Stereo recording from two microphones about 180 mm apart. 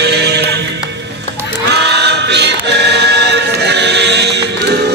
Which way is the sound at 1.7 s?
70° right (ahead or behind).